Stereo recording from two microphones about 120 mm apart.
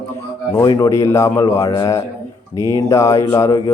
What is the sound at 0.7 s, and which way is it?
Speech, 25° left (ahead or behind).